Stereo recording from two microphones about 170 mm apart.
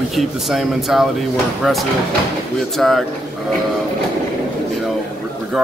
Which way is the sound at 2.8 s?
Centre (ahead or behind).